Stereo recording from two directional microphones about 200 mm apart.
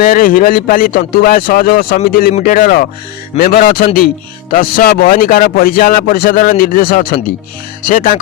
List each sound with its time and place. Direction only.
0.0 s a man's voice: 45° left (ahead or behind)